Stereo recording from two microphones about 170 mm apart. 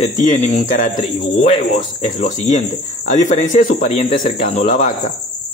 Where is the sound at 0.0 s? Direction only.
45° left (ahead or behind).